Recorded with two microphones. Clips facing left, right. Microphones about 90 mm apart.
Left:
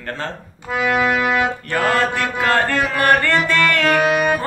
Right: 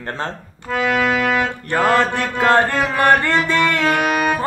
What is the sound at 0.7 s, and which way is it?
Music, 10° left (ahead or behind).